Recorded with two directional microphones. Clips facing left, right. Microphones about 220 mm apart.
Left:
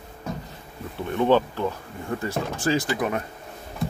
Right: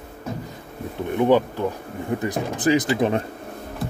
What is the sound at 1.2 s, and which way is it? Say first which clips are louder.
Speech: right 2 dB; 15° right (ahead or behind).